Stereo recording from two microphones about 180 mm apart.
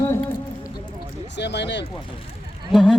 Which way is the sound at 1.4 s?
75° left (ahead or behind).